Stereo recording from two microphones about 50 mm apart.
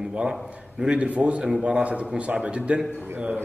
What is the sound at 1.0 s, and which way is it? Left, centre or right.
A man's voice, right.